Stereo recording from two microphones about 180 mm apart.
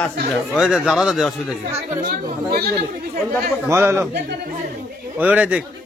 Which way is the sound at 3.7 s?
15° right (ahead or behind).